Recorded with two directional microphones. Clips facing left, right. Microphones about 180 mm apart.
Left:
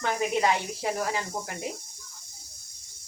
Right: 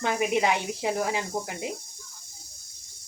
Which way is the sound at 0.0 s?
15° right (ahead or behind).